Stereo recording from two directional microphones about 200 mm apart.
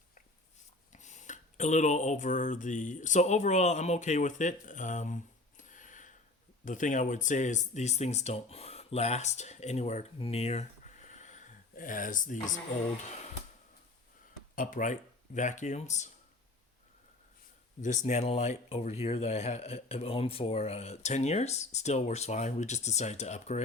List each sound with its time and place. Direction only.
0.9 s speech: 35° left (ahead or behind)
14.5 s speech: 40° left (ahead or behind)
17.8 s speech: 35° left (ahead or behind)